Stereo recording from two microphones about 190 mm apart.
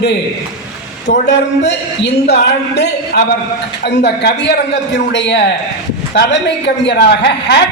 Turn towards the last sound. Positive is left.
turn(degrees=65)  # may be behind; listen again after turning